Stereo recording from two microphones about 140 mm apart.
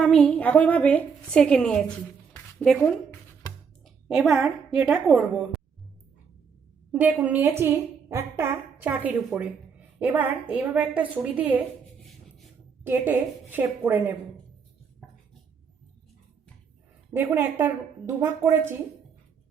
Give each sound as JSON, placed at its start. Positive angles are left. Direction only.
{"t": 0.0, "sound": "a woman's voice", "side_deg": 5}
{"t": 3.8, "sound": "a woman's voice", "side_deg": -5}
{"t": 6.9, "sound": "a woman's voice", "side_deg": -10}
{"t": 12.8, "sound": "a woman's voice", "side_deg": -15}
{"t": 17.1, "sound": "a woman's voice", "side_deg": -15}